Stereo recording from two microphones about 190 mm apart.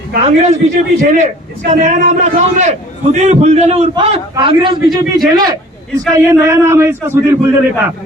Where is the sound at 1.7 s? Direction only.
40° right (ahead or behind).